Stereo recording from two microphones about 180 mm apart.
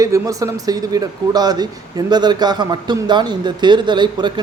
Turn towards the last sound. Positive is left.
turn(degrees=-25)  # may be behind; listen again after turning